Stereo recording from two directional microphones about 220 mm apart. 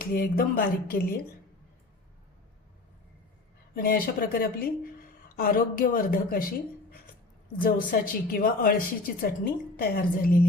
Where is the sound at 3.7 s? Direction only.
40° left (ahead or behind).